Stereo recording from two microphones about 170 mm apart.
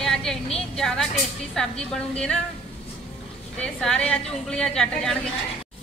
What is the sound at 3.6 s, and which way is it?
A woman's voice, 5° left (ahead or behind).